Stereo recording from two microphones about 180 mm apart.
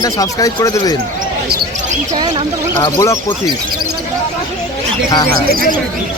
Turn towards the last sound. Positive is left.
turn(degrees=-55)  # may be behind; listen again after turning